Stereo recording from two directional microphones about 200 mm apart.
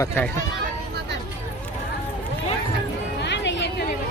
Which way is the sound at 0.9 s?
60° right (ahead or behind).